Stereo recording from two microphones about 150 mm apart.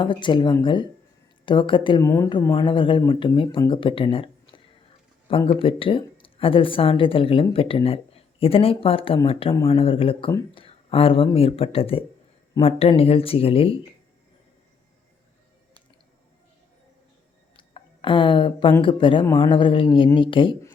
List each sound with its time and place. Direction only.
0.0 s speech: 30° left (ahead or behind)
2.0 s speech: 20° left (ahead or behind)
2.6 s speech: 35° left (ahead or behind)
17.6 s a sound: 35° left (ahead or behind)
18.8 s speech: 35° left (ahead or behind)